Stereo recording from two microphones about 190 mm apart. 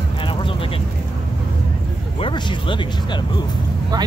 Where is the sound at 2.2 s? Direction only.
25° left (ahead or behind).